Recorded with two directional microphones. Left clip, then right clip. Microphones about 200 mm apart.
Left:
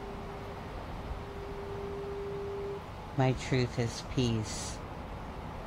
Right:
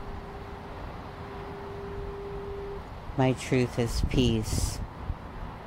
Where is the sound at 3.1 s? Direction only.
30° right (ahead or behind).